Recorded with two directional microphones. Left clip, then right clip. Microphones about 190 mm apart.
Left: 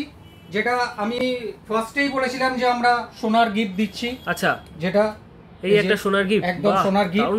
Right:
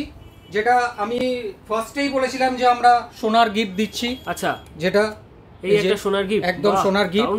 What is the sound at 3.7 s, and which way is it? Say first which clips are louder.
Speech: right 2 dB; 40° right (ahead or behind).